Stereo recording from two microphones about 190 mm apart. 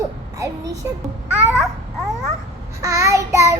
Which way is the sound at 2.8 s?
15° right (ahead or behind).